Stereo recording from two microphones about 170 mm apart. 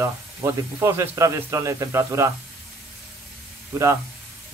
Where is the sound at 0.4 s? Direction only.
15° right (ahead or behind).